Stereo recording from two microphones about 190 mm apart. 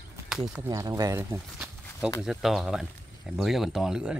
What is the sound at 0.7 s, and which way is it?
Speech, 20° right (ahead or behind).